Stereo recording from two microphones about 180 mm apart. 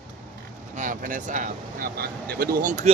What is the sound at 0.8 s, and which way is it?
Speech, 45° right (ahead or behind).